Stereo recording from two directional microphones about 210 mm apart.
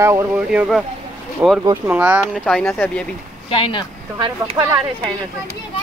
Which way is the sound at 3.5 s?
25° left (ahead or behind).